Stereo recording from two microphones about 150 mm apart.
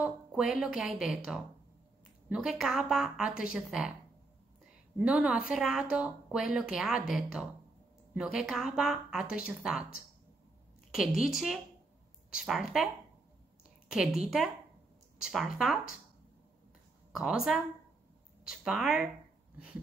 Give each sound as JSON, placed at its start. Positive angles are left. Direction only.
{"t": 0.0, "sound": "a woman's voice", "side_deg": -5}
{"t": 5.0, "sound": "a woman's voice", "side_deg": -5}
{"t": 10.9, "sound": "a woman's voice", "side_deg": -5}
{"t": 15.3, "sound": "a woman's voice", "side_deg": -5}
{"t": 17.1, "sound": "a woman's voice", "side_deg": -5}